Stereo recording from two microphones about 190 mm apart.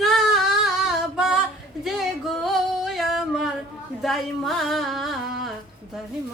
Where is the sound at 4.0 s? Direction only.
Centre (ahead or behind).